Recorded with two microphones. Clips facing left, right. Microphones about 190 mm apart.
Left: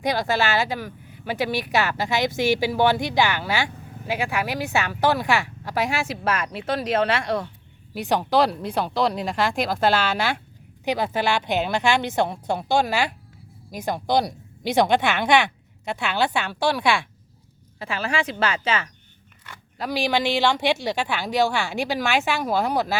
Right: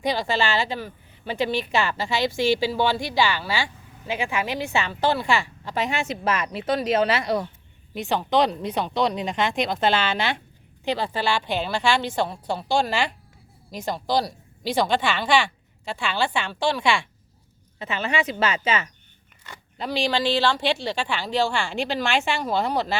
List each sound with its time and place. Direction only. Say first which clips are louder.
0.0 s speech: left 1 dB; 15° left (ahead or behind); by 7.4 s 5° right (ahead or behind)
7.9 s speech: left 1 dB; 10° left (ahead or behind)
16.3 s speech: left 1 dB; 10° left (ahead or behind)
17.7 s speech: even; centre (ahead or behind)
19.8 s speech: left 1 dB; 10° left (ahead or behind)